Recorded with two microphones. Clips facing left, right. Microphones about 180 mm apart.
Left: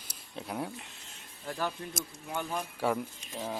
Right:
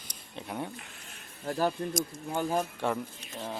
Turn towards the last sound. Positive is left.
turn(degrees=5)  # may be behind; listen again after turning